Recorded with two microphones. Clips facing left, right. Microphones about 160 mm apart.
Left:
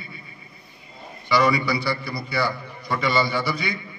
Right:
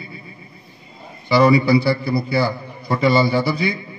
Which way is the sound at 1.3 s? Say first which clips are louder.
Right 7 dB; 30° right (ahead or behind).